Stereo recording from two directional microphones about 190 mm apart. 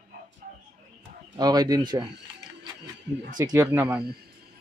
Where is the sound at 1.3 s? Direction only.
20° right (ahead or behind).